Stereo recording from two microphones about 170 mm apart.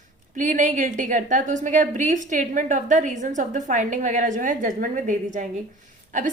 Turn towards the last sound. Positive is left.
turn(degrees=-45)  # may be behind; listen again after turning